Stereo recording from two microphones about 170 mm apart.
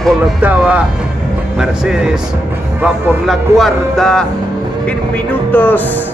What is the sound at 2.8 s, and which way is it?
Speech, centre (ahead or behind).